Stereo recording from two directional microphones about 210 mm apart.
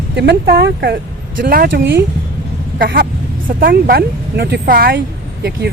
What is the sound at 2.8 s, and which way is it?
Speech, 45° right (ahead or behind).